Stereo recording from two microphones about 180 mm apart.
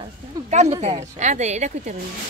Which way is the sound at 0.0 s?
40° right (ahead or behind).